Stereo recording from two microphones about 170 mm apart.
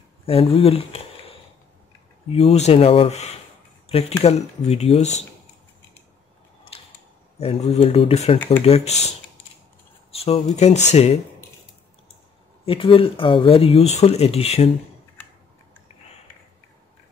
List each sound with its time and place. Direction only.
0.3 s speech: 35° left (ahead or behind)
2.3 s speech: 40° left (ahead or behind)
7.3 s speech: 40° left (ahead or behind)
10.1 s speech: 40° left (ahead or behind)
12.6 s speech: 30° left (ahead or behind)